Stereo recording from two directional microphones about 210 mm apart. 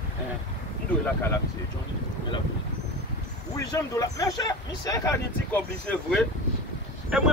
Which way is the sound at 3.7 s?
15° left (ahead or behind).